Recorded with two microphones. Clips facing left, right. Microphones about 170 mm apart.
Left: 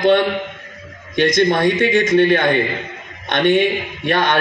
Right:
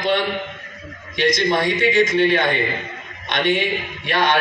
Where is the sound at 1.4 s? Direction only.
55° left (ahead or behind).